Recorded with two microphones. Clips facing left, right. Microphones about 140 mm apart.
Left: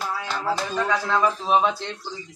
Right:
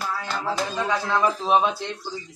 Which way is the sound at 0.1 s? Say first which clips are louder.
Left 2 dB; 5° left (ahead or behind).